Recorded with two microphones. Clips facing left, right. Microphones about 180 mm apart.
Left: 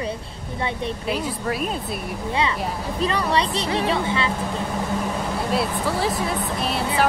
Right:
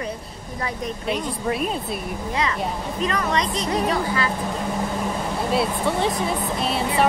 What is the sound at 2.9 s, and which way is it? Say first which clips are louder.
Speech: left 2 dB; 35° left (ahead or behind).